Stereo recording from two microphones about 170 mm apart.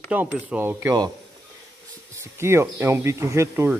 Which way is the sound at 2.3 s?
15° right (ahead or behind).